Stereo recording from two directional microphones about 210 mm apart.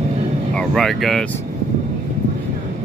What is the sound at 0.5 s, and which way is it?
Speech, centre (ahead or behind).